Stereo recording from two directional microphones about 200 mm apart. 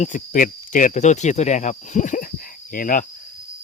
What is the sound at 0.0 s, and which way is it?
Speech, 40° left (ahead or behind).